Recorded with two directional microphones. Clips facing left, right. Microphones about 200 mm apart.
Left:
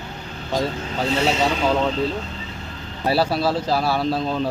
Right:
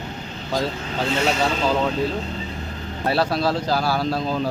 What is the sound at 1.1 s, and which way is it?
Speech, 30° left (ahead or behind).